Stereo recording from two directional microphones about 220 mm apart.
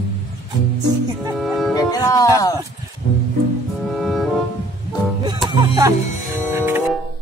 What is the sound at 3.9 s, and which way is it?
Music, centre (ahead or behind).